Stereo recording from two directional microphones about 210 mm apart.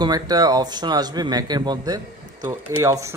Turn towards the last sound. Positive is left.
turn(degrees=-15)  # may be behind; listen again after turning